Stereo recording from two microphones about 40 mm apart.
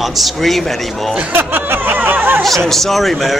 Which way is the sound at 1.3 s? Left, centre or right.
Right.